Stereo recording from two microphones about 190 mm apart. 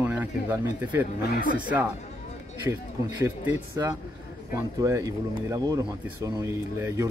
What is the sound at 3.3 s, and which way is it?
Speech, 10° right (ahead or behind).